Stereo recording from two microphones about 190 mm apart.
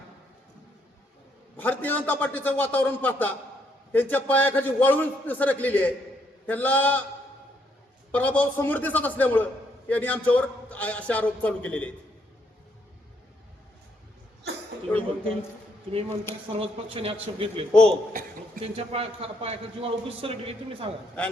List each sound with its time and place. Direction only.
1.5 s a man's voice: 10° left (ahead or behind)
8.1 s a man's voice: 10° left (ahead or behind)
14.8 s a man's voice: 10° left (ahead or behind)
16.5 s a man's voice: 30° right (ahead or behind)
17.7 s a man's voice: 5° left (ahead or behind)
18.1 s a sound: 45° right (ahead or behind)
18.6 s a man's voice: 30° right (ahead or behind)